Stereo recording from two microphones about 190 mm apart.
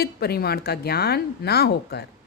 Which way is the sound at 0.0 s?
55° left (ahead or behind).